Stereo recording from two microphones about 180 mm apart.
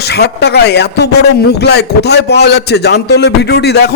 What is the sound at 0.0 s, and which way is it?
A man's voice, 65° left (ahead or behind).